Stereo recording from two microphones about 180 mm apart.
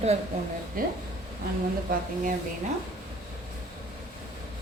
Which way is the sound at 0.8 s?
50° right (ahead or behind).